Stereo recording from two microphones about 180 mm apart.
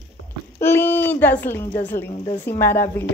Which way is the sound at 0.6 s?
10° left (ahead or behind).